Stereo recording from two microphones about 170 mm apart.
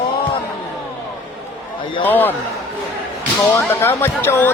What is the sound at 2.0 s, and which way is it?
Speech, 10° left (ahead or behind).